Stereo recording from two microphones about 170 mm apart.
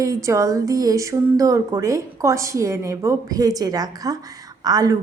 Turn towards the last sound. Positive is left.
turn(degrees=-20)  # may be behind; listen again after turning